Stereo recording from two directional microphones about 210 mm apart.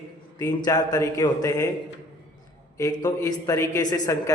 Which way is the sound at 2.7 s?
15° left (ahead or behind).